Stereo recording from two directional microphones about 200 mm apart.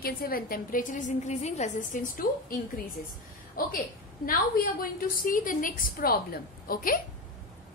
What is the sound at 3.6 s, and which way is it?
A woman's voice, 45° left (ahead or behind).